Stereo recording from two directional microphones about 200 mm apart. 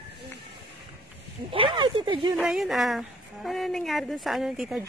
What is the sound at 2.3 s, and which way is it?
A woman's voice, centre (ahead or behind).